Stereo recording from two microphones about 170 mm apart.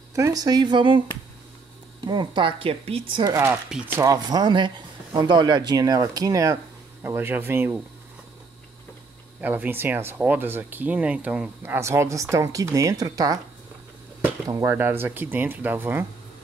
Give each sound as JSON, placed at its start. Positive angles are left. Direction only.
{"t": 0.1, "sound": "speech", "side_deg": -20}
{"t": 2.0, "sound": "speech", "side_deg": -25}
{"t": 3.6, "sound": "speech", "side_deg": -5}
{"t": 4.0, "sound": "speech", "side_deg": -20}
{"t": 9.4, "sound": "speech", "side_deg": -10}